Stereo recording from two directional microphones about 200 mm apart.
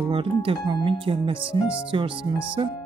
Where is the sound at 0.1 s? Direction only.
25° right (ahead or behind).